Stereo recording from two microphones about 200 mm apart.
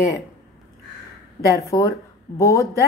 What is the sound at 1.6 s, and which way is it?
Speech, 15° left (ahead or behind).